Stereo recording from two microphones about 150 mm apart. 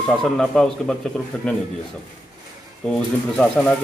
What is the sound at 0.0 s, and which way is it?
A man's voice, 5° left (ahead or behind).